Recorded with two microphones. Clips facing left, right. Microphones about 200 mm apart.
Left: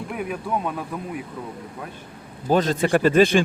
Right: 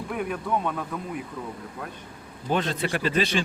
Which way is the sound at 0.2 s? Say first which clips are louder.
Left 1 dB; 5° left (ahead or behind).